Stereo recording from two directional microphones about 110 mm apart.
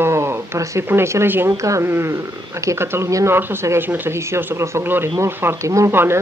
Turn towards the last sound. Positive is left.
turn(degrees=-20)  # may be behind; listen again after turning